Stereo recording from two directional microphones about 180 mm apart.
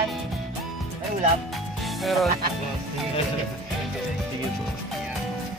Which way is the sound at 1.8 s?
Centre (ahead or behind).